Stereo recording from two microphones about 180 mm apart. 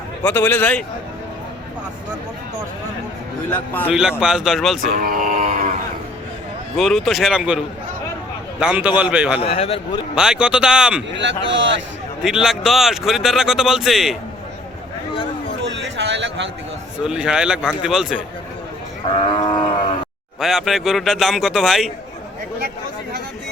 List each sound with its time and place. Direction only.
0.2 s a man's voice: 10° left (ahead or behind)
3.5 s a man's voice: 10° left (ahead or behind)
3.8 s speech: 5° right (ahead or behind)
4.9 s speech: 50° right (ahead or behind)
6.7 s a man's voice: centre (ahead or behind)
9.4 s a man's voice: 35° left (ahead or behind)
10.2 s speech: 5° right (ahead or behind)
11.2 s a man's voice: 85° right
12.2 s speech: centre (ahead or behind)
15.1 s a sound: 30° left (ahead or behind)
15.7 s a sound: 85° right
17.0 s speech: 5° right (ahead or behind)
19.1 s livestock: 25° left (ahead or behind)
20.4 s speech: centre (ahead or behind)